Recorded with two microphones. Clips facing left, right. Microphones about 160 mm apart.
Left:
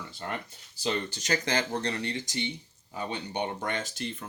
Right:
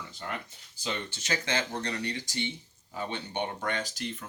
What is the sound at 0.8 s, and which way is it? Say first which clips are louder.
Speech: left 5 dB; 40° left (ahead or behind).